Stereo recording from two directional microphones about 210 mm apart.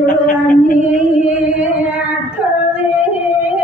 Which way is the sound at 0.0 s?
40° left (ahead or behind).